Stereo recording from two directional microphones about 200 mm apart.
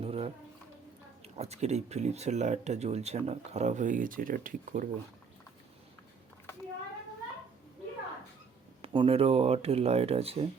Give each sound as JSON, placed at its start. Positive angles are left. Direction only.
{"t": 0.0, "sound": "a sound", "side_deg": -30}
{"t": 1.2, "sound": "speech", "side_deg": -30}
{"t": 8.8, "sound": "speech", "side_deg": -25}